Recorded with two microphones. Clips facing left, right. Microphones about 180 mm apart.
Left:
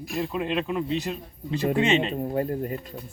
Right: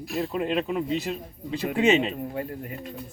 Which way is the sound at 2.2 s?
35° left (ahead or behind).